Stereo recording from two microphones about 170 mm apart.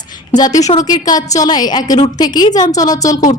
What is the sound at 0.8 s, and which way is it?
A woman's voice, 20° left (ahead or behind).